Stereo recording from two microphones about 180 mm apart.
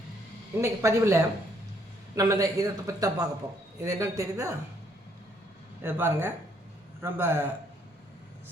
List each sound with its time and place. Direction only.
0.5 s speech: 15° right (ahead or behind)
5.8 s speech: 10° right (ahead or behind)